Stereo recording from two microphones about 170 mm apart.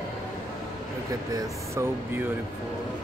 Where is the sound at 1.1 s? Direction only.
20° right (ahead or behind).